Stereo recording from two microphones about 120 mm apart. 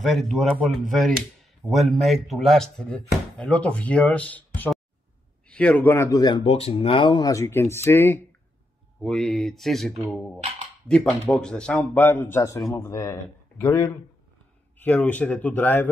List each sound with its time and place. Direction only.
0.0 s speech: centre (ahead or behind); by 6.4 s 35° left (ahead or behind)
6.4 s speech: 55° left (ahead or behind); by 8.2 s 20° left (ahead or behind)
9.0 s speech: 5° left (ahead or behind)
10.9 s speech: 15° right (ahead or behind)
11.3 s speech: 5° left (ahead or behind)